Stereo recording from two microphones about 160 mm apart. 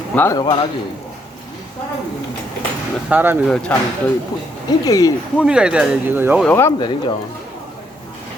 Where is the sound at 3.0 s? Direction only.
10° right (ahead or behind).